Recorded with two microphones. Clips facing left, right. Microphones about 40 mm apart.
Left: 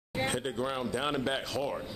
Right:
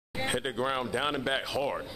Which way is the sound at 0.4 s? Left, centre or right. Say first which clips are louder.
Right 3 dB; right.